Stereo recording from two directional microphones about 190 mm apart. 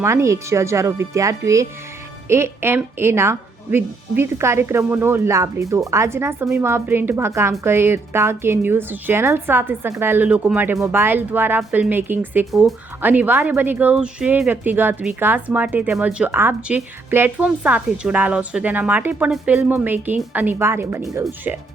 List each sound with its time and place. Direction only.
0.0 s a woman's voice: 15° right (ahead or behind)